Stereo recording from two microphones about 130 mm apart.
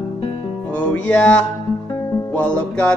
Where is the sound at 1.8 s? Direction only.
25° left (ahead or behind).